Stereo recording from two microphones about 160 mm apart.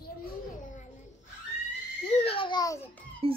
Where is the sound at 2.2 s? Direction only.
35° left (ahead or behind).